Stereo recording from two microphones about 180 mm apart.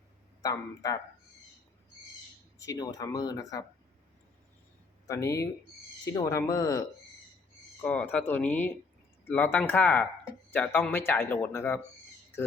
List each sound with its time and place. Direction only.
0.4 s speech: 20° left (ahead or behind)
2.6 s speech: 20° left (ahead or behind)
5.0 s a man's voice: 15° left (ahead or behind)
7.8 s a man's voice: 10° left (ahead or behind)